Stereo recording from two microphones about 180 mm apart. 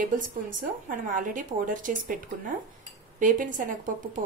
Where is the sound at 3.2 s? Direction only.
45° right (ahead or behind).